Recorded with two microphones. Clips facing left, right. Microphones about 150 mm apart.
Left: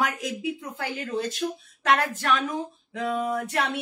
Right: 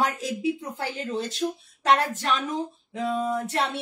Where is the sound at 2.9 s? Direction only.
25° right (ahead or behind).